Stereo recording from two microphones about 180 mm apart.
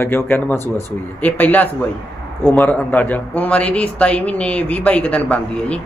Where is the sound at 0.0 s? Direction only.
10° left (ahead or behind).